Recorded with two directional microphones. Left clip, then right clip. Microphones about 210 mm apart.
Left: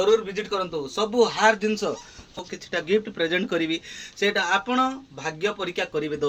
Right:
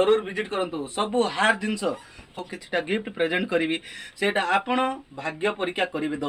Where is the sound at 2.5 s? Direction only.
5° left (ahead or behind).